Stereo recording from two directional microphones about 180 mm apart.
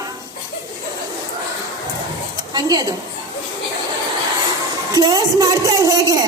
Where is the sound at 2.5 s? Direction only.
20° right (ahead or behind).